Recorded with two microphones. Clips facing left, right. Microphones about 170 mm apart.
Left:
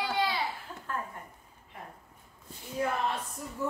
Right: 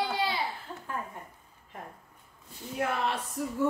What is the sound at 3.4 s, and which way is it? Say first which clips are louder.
Speech: right 8 dB; 90° right.